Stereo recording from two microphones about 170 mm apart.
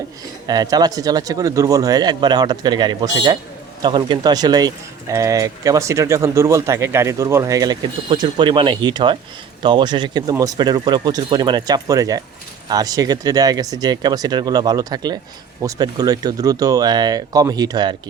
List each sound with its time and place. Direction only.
0.4 s speech: 25° right (ahead or behind)